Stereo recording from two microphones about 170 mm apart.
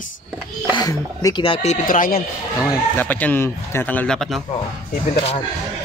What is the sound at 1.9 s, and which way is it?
Speech, 55° left (ahead or behind).